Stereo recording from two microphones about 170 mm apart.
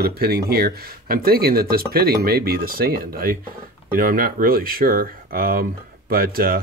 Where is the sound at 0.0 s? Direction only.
65° right (ahead or behind).